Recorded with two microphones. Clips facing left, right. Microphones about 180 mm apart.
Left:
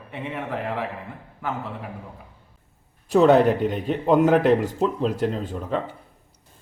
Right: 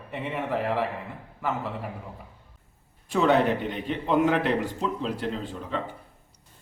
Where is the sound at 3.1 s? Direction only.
40° left (ahead or behind).